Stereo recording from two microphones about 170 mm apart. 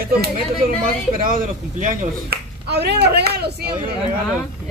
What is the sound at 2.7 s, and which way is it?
Speech, 75° right (ahead or behind).